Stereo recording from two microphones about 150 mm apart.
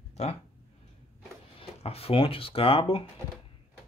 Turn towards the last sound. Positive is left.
turn(degrees=40)  # may be behind; listen again after turning